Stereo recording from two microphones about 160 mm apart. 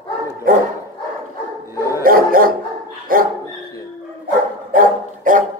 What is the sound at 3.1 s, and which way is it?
Dog, 60° right (ahead or behind).